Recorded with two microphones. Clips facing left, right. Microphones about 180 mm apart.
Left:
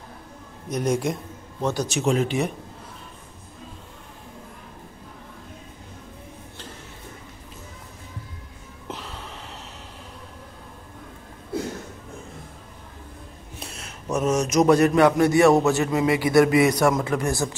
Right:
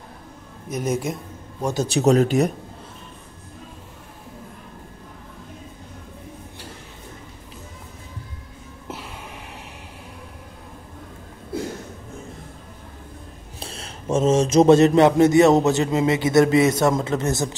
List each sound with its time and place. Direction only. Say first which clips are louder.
0.7 s a man's voice: left 1 dB; 5° right (ahead or behind)
1.8 s speech: right 7 dB; 35° right (ahead or behind)
8.8 s a sound: even; 10° right (ahead or behind)
13.6 s speech: right 3 dB; 30° right (ahead or behind)